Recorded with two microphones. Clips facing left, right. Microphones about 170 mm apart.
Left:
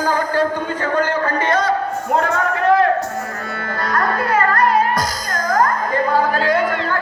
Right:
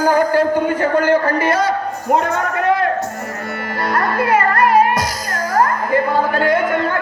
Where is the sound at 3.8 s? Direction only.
25° right (ahead or behind).